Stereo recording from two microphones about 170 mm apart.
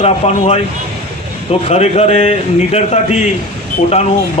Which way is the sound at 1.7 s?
40° left (ahead or behind).